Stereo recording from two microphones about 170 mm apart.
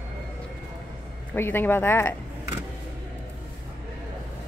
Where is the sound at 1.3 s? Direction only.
10° left (ahead or behind).